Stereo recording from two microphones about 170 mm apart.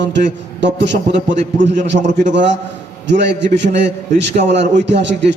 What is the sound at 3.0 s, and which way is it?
A man's voice, 90° right.